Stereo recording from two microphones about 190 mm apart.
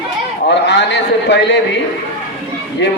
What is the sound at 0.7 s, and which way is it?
Speech, 65° left (ahead or behind).